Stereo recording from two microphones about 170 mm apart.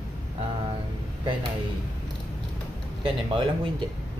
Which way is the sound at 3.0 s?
30° right (ahead or behind).